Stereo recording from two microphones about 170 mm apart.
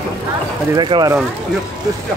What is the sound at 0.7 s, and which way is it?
Speech, 25° right (ahead or behind).